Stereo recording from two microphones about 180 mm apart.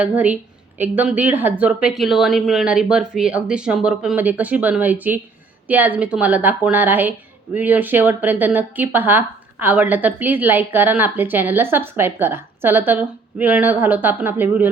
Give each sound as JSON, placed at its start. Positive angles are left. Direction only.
{"t": 0.0, "sound": "a woman's voice", "side_deg": -10}